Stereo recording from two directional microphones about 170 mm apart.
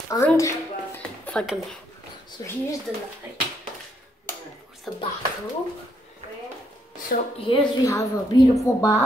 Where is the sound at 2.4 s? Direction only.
20° left (ahead or behind).